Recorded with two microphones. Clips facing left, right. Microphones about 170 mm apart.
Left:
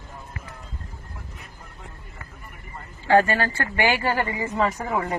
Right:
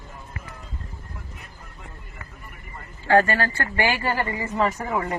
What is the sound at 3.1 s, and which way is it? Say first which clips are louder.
A man's voice: even; 15° left (ahead or behind).